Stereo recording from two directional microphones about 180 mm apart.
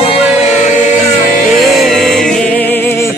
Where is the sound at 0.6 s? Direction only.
40° left (ahead or behind).